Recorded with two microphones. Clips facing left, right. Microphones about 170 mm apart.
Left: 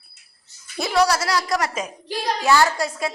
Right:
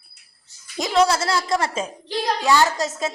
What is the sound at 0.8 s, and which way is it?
Speech, 20° right (ahead or behind).